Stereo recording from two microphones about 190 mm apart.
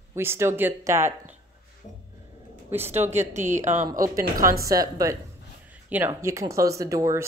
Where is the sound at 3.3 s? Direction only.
40° right (ahead or behind).